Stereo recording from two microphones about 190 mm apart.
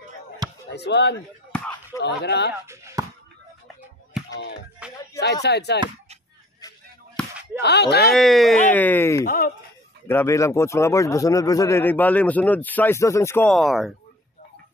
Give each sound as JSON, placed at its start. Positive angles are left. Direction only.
{"t": 0.7, "sound": "speech", "side_deg": 65}
{"t": 1.5, "sound": "a sound", "side_deg": 5}
{"t": 2.0, "sound": "speech", "side_deg": 65}
{"t": 2.5, "sound": "chop", "side_deg": -15}
{"t": 4.3, "sound": "music", "side_deg": 65}
{"t": 4.8, "sound": "music", "side_deg": -5}
{"t": 5.2, "sound": "speech", "side_deg": 60}
{"t": 7.6, "sound": "speech", "side_deg": 60}
{"t": 8.1, "sound": "speech", "side_deg": 0}
{"t": 9.2, "sound": "speech", "side_deg": 50}
{"t": 10.0, "sound": "speech", "side_deg": 15}
{"t": 13.5, "sound": "speech", "side_deg": 0}